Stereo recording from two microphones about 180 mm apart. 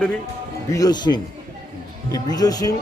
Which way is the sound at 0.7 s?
20° left (ahead or behind).